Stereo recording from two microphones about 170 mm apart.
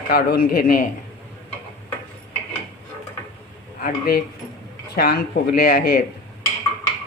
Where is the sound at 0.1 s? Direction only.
60° left (ahead or behind).